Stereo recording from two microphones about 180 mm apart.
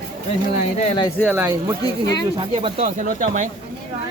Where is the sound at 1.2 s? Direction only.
10° right (ahead or behind).